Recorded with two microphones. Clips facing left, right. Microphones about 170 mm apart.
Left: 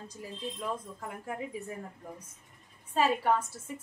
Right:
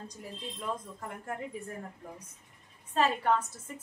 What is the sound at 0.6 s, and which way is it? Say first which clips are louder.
Speech: right 2 dB; 5° left (ahead or behind).